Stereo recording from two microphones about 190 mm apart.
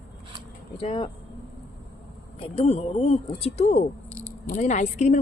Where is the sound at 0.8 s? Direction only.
30° left (ahead or behind).